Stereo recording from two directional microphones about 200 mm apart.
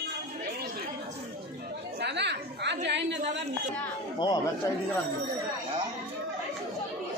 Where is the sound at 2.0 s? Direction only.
60° right (ahead or behind).